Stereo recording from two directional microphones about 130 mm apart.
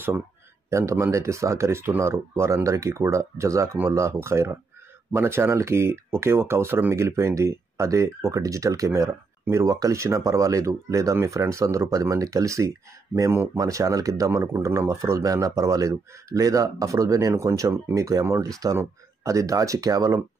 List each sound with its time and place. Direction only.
0.7 s speech: 20° right (ahead or behind)